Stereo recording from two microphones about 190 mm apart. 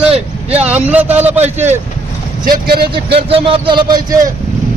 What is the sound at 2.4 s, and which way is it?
Speech, 50° right (ahead or behind).